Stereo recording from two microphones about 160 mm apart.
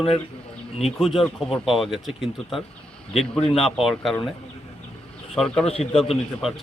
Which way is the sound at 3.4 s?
40° left (ahead or behind).